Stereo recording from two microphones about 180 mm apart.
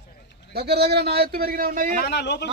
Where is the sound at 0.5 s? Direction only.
65° right (ahead or behind).